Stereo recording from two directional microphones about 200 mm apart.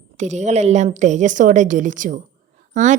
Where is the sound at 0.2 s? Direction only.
35° right (ahead or behind).